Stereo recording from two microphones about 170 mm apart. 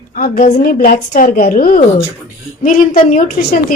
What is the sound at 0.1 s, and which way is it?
A woman's voice, 55° left (ahead or behind).